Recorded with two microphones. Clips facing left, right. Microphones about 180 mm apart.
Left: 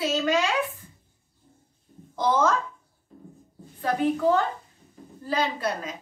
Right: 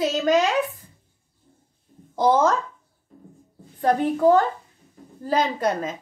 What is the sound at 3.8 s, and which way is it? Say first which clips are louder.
A woman's voice: right 4 dB; 40° right (ahead or behind).